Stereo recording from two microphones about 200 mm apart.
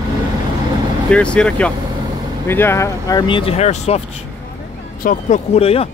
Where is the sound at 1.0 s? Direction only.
5° left (ahead or behind).